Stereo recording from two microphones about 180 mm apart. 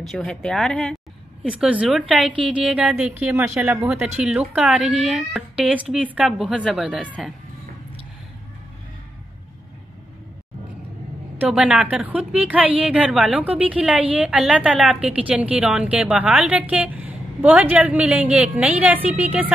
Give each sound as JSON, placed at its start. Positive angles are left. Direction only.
{"t": 0.0, "sound": "a woman's voice", "side_deg": 0}
{"t": 11.3, "sound": "a woman's voice", "side_deg": -5}